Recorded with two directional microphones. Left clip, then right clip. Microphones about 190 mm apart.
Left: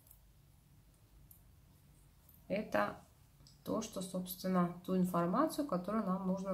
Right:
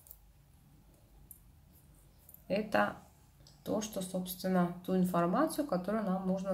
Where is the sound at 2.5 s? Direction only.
10° right (ahead or behind).